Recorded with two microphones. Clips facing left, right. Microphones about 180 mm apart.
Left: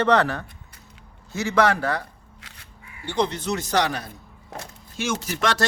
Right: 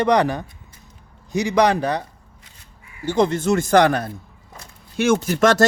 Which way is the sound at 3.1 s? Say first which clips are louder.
Right 6 dB; 45° right (ahead or behind).